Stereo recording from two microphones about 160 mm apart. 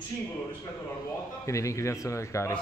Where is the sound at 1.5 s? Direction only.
20° left (ahead or behind).